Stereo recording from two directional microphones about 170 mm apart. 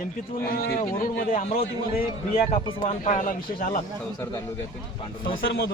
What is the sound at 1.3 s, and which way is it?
Speech, 45° left (ahead or behind).